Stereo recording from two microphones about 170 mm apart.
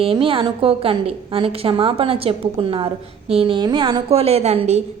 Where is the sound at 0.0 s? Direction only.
30° right (ahead or behind).